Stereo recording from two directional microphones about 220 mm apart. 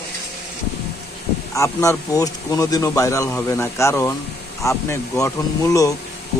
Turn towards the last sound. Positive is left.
turn(degrees=15)  # may be behind; listen again after turning